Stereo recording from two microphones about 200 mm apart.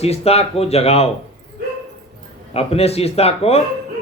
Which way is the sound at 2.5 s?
30° left (ahead or behind).